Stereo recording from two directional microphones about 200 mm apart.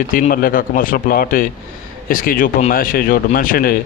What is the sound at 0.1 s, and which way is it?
A man's voice, 45° left (ahead or behind).